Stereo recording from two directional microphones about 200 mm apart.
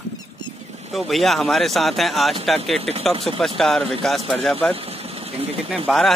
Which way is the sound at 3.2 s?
Centre (ahead or behind).